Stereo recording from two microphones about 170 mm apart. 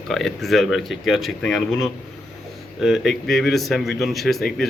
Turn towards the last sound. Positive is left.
turn(degrees=0)  # may be behind; listen again after turning